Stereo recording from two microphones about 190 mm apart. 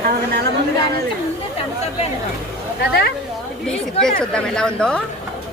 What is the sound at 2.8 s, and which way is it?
Speech, 55° left (ahead or behind).